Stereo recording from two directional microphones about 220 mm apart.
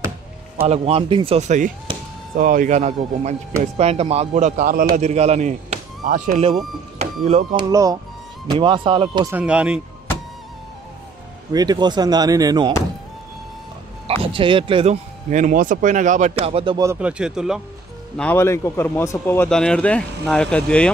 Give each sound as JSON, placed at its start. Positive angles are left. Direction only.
{"t": 0.7, "sound": "speech", "side_deg": -25}
{"t": 7.7, "sound": "speech", "side_deg": -15}
{"t": 9.3, "sound": "speech", "side_deg": -5}
{"t": 11.5, "sound": "speech", "side_deg": -20}
{"t": 14.0, "sound": "speech", "side_deg": -25}
{"t": 18.1, "sound": "speech", "side_deg": 5}